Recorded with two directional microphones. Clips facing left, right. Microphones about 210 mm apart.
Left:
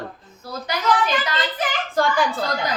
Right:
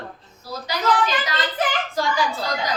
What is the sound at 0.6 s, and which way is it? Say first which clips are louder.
A woman's voice: even; 55° left (ahead or behind).